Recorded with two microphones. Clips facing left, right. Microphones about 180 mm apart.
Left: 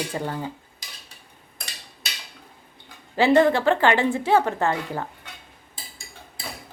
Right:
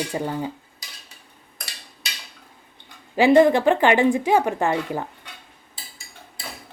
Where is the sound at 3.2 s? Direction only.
15° right (ahead or behind).